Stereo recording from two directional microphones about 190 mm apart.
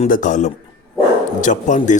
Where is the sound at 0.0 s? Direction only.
40° left (ahead or behind).